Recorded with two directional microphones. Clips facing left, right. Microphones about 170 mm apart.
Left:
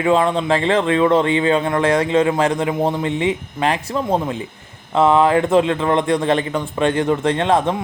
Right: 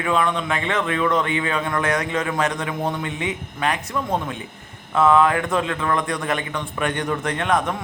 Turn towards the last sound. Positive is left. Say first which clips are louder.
# left 5 dB
turn(degrees=30)  # may be behind; listen again after turning